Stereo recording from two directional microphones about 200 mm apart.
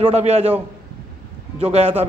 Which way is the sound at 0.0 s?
30° right (ahead or behind).